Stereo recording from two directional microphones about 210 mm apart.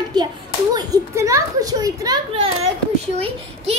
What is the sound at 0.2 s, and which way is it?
A child's voice, 20° right (ahead or behind).